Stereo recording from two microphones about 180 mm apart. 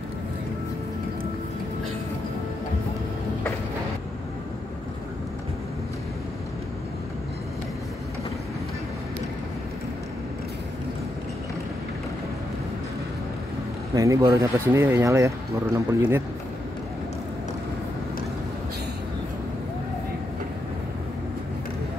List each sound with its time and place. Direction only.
13.9 s speech: 20° right (ahead or behind)